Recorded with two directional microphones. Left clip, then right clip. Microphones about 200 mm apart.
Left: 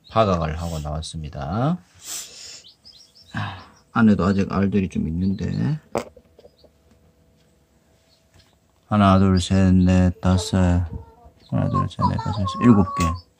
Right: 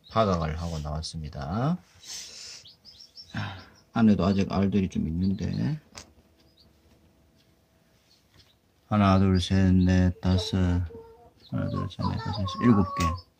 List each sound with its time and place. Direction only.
0.1 s speech: centre (ahead or behind)
2.3 s bird: centre (ahead or behind)
3.3 s speech: 5° left (ahead or behind)
8.8 s speech: 5° left (ahead or behind); by 10.9 s 25° left (ahead or behind)
11.5 s a sound: 30° left (ahead or behind)
12.4 s speech: 15° left (ahead or behind)